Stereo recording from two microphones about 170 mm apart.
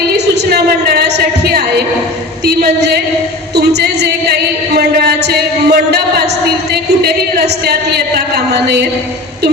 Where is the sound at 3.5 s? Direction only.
75° right (ahead or behind).